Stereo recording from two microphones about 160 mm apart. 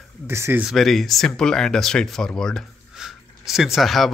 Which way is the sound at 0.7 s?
Centre (ahead or behind).